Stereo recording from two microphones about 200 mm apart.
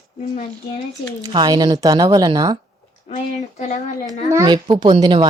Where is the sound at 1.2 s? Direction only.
20° right (ahead or behind).